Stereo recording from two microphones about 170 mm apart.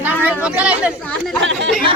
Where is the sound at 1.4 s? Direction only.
90° right.